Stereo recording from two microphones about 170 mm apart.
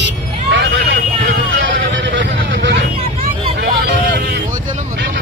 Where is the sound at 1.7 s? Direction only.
75° right (ahead or behind).